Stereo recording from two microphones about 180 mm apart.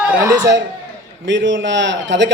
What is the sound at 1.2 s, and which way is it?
A man's voice, 90° right.